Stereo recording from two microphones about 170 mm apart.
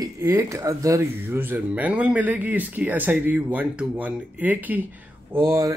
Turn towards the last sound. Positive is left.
turn(degrees=-20)  # may be behind; listen again after turning